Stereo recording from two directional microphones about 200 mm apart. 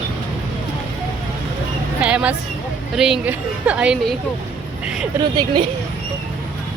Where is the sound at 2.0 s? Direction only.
5° right (ahead or behind).